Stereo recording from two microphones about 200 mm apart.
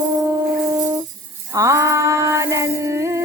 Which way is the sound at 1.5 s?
15° right (ahead or behind).